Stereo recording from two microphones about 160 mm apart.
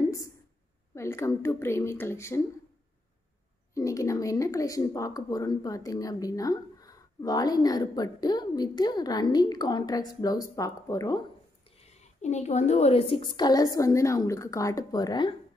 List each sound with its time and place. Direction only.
0.0 s a sound: 20° left (ahead or behind)
0.9 s speech: 15° left (ahead or behind)
3.7 s speech: 20° left (ahead or behind)
12.0 s speech: 45° left (ahead or behind); by 15.3 s 25° left (ahead or behind)